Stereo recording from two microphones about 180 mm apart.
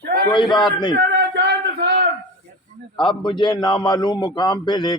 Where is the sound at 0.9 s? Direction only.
65° right (ahead or behind).